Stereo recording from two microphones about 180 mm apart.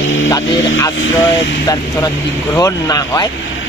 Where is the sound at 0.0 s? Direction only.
90° left.